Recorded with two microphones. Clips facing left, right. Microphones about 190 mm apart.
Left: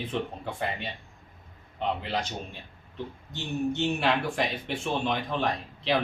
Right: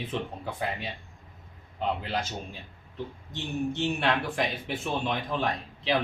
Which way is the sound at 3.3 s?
Centre (ahead or behind).